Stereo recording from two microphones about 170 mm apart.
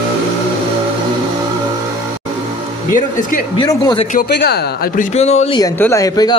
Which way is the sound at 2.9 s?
50° left (ahead or behind).